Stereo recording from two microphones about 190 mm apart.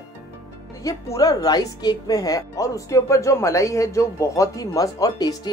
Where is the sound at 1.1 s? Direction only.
20° left (ahead or behind).